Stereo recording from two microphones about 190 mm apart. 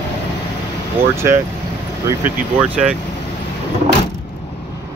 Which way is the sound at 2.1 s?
10° right (ahead or behind).